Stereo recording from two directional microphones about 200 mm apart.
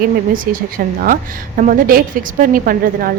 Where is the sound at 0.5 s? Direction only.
45° right (ahead or behind).